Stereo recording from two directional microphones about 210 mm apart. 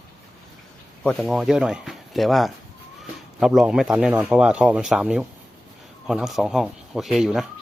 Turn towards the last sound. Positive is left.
turn(degrees=0)  # may be behind; listen again after turning